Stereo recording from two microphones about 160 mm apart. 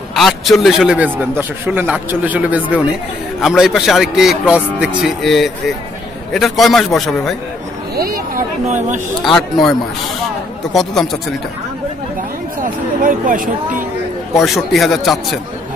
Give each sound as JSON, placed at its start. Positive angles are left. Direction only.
{"t": 0.1, "sound": "a man's voice", "side_deg": 0}
{"t": 7.9, "sound": "a sound", "side_deg": -70}
{"t": 8.6, "sound": "speech", "side_deg": -50}
{"t": 9.2, "sound": "a man's voice", "side_deg": 0}
{"t": 13.0, "sound": "speech", "side_deg": -55}
{"t": 14.4, "sound": "a man's voice", "side_deg": 0}